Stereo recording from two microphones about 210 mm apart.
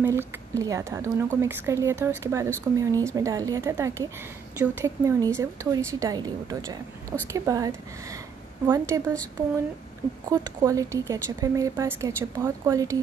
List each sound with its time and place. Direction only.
0.0 s speech: 10° right (ahead or behind)
10.3 s speech: 15° right (ahead or behind)